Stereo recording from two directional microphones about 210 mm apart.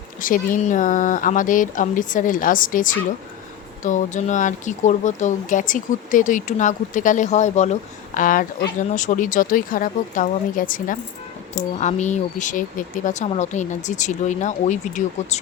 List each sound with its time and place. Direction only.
0.2 s speech: 40° left (ahead or behind)